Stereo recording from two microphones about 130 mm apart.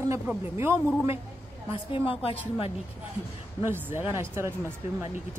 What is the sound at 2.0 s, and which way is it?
Speech, 45° left (ahead or behind).